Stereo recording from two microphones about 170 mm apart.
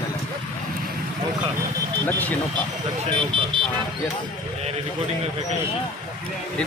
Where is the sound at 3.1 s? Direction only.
30° right (ahead or behind).